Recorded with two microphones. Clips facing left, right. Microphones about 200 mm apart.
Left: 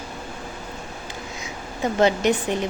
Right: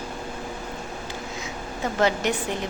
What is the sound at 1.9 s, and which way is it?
Speech, 20° left (ahead or behind).